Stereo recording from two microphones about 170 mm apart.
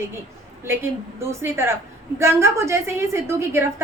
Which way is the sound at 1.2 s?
15° right (ahead or behind).